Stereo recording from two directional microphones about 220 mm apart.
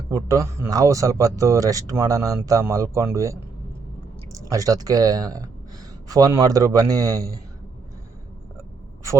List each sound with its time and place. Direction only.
0.1 s speech: 15° right (ahead or behind)